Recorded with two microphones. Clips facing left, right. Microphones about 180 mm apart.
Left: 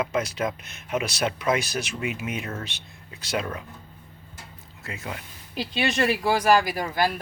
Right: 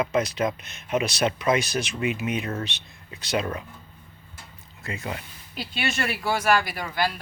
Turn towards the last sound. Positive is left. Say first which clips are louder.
# left 3 dB
turn(degrees=45)  # may be behind; listen again after turning